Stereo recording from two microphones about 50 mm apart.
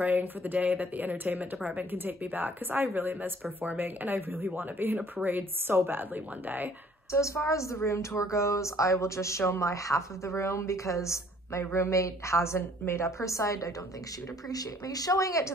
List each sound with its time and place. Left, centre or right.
0.0 s speech: right
7.1 s a woman's voice: left
15.1 s a woman's voice: left